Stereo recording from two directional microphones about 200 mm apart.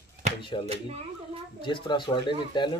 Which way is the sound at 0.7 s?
30° right (ahead or behind).